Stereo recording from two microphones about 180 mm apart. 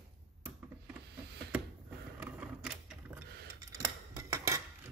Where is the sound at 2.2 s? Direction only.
5° right (ahead or behind).